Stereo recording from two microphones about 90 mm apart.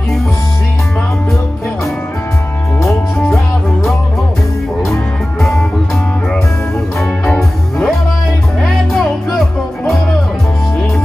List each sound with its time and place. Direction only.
7.0 s music: centre (ahead or behind)